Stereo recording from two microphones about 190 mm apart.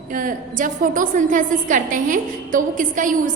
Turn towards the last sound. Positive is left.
turn(degrees=-45)  # may be behind; listen again after turning